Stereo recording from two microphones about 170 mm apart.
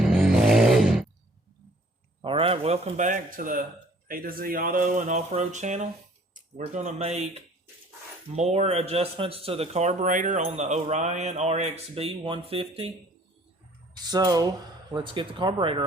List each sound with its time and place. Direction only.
0.0 s a sound: centre (ahead or behind)
2.2 s speech: 30° right (ahead or behind)
14.0 s speech: 25° right (ahead or behind)